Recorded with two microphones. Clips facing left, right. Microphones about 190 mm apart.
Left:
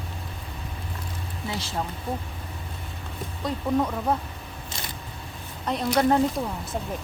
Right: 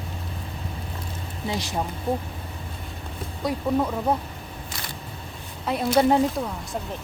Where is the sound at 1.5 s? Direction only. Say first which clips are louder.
Right 3 dB; 15° right (ahead or behind).